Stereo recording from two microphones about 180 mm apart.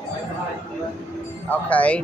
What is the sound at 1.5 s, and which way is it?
Speech, 10° left (ahead or behind).